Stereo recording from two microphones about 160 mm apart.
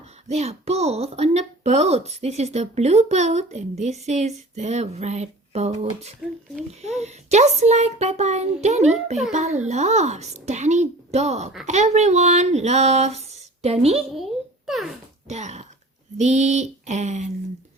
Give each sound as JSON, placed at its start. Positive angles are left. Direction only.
{"t": 0.3, "sound": "speech", "side_deg": -40}
{"t": 14.7, "sound": "speech", "side_deg": 0}
{"t": 15.3, "sound": "speech", "side_deg": -45}